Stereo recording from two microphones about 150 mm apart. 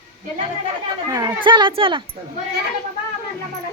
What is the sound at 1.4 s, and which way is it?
Speech, 35° right (ahead or behind).